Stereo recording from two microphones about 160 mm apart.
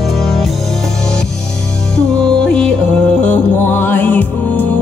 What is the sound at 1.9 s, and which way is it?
Music, 5° left (ahead or behind).